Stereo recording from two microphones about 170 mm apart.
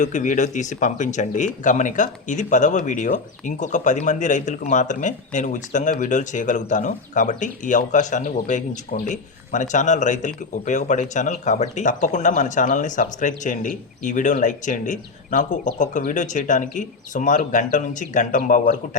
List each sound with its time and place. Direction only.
0.0 s speech: 45° left (ahead or behind)